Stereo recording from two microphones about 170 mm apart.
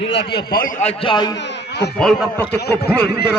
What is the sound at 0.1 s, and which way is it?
Speech, 85° left.